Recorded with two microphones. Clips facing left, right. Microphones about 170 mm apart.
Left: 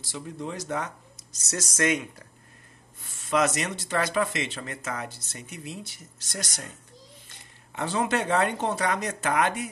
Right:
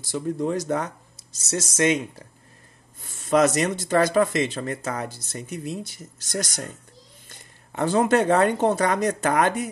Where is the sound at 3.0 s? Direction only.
40° right (ahead or behind).